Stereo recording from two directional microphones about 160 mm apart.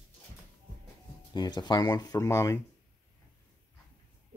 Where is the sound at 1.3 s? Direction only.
25° left (ahead or behind).